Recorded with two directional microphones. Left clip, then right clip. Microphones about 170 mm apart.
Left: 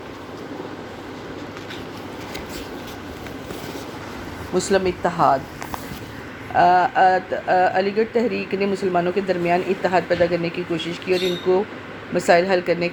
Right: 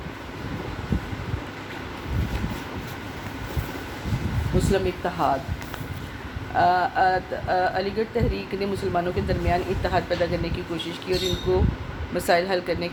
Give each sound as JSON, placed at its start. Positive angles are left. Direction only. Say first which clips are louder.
{"t": 4.7, "sound": "speech", "louder": "left 6 dB", "side_deg": 35}
{"t": 6.6, "sound": "speech", "louder": "left 5 dB", "side_deg": 40}